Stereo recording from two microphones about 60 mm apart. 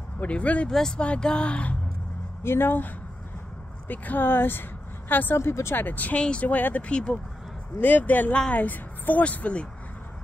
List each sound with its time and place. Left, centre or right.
0.2 s speech: left
0.7 s speech: centre
2.4 s speech: left
5.4 s speech: left; by 7.2 s centre
7.8 s speech: left